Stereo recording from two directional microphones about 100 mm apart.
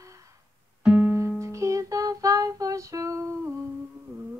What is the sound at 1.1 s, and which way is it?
Music, 30° right (ahead or behind).